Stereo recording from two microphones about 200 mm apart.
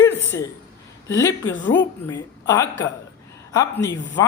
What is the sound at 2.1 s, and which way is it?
A woman's voice, 15° left (ahead or behind).